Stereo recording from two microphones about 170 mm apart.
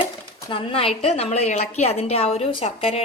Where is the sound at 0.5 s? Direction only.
35° left (ahead or behind).